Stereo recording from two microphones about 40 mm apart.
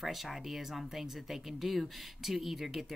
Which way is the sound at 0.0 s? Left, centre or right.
Centre.